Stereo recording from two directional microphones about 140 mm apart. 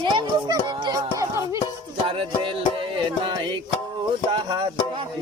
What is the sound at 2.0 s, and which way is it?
Music, 40° right (ahead or behind).